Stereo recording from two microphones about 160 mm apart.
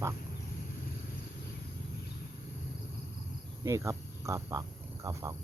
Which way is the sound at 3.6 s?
20° right (ahead or behind).